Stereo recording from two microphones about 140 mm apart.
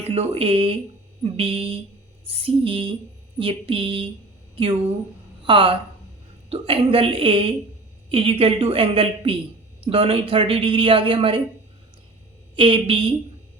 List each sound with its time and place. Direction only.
0.0 s speech: 45° right (ahead or behind)
5.5 s speech: 40° right (ahead or behind)
12.5 s speech: 40° right (ahead or behind)